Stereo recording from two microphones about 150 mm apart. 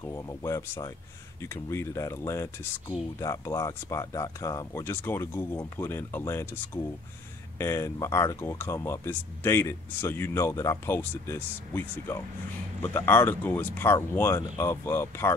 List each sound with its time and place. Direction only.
0.0 s speech: 20° left (ahead or behind)